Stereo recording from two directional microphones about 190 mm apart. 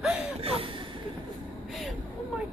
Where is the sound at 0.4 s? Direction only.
30° right (ahead or behind).